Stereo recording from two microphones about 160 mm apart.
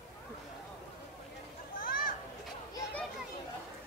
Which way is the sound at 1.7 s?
60° left (ahead or behind).